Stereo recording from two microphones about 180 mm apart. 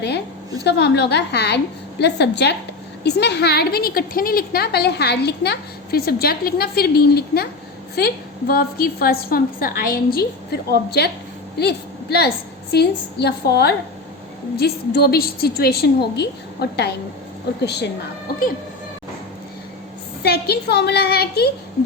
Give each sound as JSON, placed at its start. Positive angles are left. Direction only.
{"t": 0.6, "sound": "a woman's voice", "side_deg": 70}
{"t": 20.2, "sound": "a woman's voice", "side_deg": 65}